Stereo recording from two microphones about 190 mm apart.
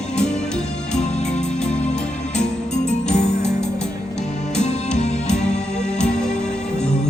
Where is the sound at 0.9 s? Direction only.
5° left (ahead or behind).